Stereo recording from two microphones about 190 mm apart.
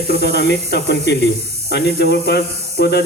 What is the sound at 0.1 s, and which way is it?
Speech, 60° left (ahead or behind).